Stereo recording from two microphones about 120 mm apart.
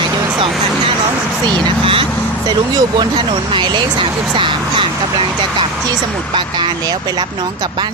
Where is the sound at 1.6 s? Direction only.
45° right (ahead or behind).